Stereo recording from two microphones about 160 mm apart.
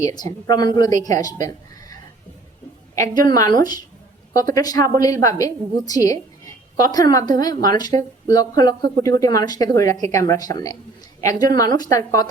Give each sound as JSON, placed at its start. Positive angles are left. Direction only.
{"t": 0.0, "sound": "a woman's voice", "side_deg": 25}